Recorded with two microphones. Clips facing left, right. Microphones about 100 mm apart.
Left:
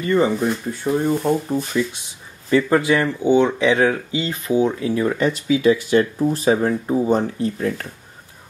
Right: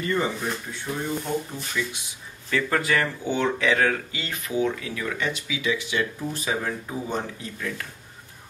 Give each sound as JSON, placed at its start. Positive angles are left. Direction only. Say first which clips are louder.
{"t": 0.1, "sound": "speech", "louder": "left 10 dB", "side_deg": 30}
{"t": 0.7, "sound": "speech", "louder": "left 10 dB", "side_deg": 50}
{"t": 2.5, "sound": "speech", "louder": "left 7 dB", "side_deg": 20}